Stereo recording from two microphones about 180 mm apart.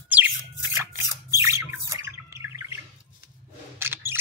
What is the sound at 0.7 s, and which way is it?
Bird, 15° right (ahead or behind).